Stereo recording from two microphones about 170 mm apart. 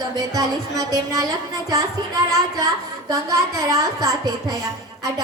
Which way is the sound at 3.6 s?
20° right (ahead or behind).